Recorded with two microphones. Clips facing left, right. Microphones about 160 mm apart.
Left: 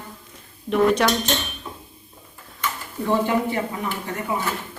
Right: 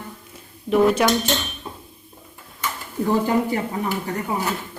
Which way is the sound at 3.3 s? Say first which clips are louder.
Right 1 dB; 35° right (ahead or behind).